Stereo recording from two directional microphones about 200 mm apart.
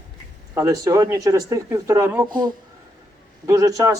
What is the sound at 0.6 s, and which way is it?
A man's voice, 15° right (ahead or behind).